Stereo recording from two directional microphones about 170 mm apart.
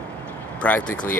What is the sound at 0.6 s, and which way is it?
Speech, 10° left (ahead or behind).